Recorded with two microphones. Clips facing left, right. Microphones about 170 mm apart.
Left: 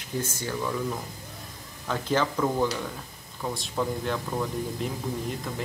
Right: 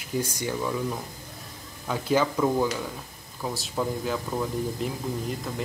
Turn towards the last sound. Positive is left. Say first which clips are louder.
# right 1 dB
turn(degrees=0)  # may be behind; listen again after turning